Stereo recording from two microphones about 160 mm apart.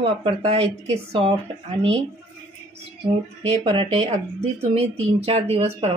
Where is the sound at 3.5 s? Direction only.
40° right (ahead or behind).